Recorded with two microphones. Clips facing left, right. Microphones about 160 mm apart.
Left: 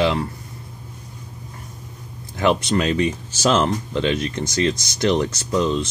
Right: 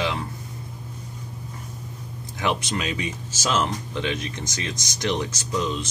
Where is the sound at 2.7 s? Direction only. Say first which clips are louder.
Left 9 dB; 55° left (ahead or behind).